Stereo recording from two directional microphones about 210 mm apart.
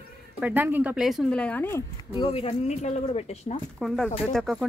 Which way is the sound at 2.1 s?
25° left (ahead or behind).